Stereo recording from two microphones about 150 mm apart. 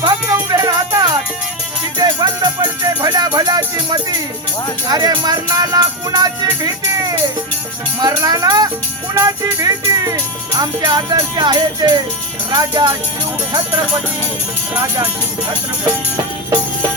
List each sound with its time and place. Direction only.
0.0 s music: 30° right (ahead or behind)
4.9 s speech: 25° right (ahead or behind)
8.0 s speech: 25° right (ahead or behind)